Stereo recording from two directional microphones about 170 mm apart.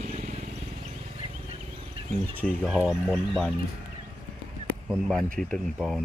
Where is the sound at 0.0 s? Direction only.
40° right (ahead or behind).